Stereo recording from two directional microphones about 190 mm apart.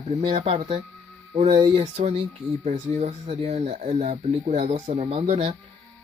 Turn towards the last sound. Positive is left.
turn(degrees=-35)  # may be behind; listen again after turning